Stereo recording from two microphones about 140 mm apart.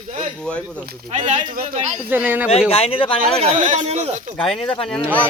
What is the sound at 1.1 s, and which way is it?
Speech, 60° right (ahead or behind).